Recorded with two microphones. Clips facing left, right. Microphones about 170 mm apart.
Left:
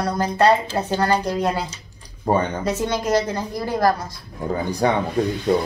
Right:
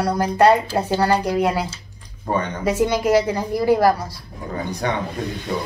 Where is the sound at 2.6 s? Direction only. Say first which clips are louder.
Right 4 dB; 10° right (ahead or behind).